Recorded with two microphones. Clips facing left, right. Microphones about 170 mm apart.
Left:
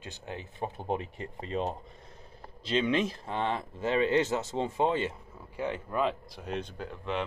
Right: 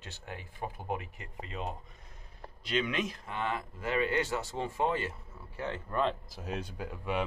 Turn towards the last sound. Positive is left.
turn(degrees=-10)  # may be behind; listen again after turning